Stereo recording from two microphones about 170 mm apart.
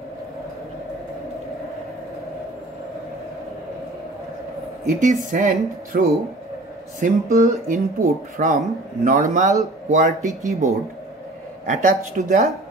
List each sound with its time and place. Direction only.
4.8 s speech: 50° right (ahead or behind)